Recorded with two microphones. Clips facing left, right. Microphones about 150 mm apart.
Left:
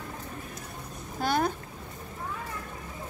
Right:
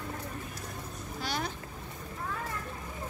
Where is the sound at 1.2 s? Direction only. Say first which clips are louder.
Left 9 dB; 50° left (ahead or behind).